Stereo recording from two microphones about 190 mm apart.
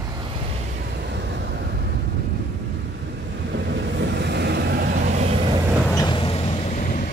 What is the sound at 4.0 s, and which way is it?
Vehicle, 65° right (ahead or behind).